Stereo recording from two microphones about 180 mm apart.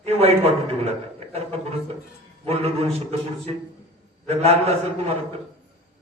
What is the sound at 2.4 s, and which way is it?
Speech, 35° right (ahead or behind).